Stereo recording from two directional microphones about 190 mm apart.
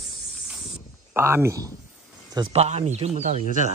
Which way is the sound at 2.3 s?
25° right (ahead or behind).